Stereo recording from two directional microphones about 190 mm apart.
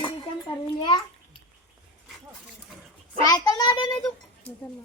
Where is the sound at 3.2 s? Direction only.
20° left (ahead or behind).